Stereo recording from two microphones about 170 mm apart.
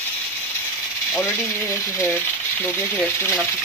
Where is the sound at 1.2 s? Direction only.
15° left (ahead or behind).